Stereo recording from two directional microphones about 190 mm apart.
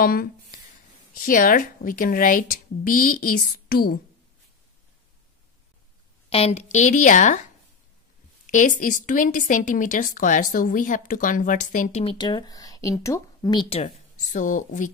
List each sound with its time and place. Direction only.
0.0 s speech: 50° left (ahead or behind)
6.3 s a woman's voice: 35° left (ahead or behind)
8.5 s speech: 40° left (ahead or behind)
12.0 s speech: 25° left (ahead or behind); by 14.9 s 45° left (ahead or behind)